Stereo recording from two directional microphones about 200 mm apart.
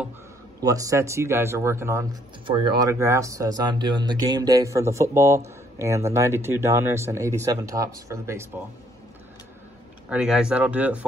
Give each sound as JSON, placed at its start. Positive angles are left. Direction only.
{"t": 0.6, "sound": "speech", "side_deg": -15}
{"t": 2.4, "sound": "speech", "side_deg": -25}
{"t": 10.0, "sound": "speech", "side_deg": -5}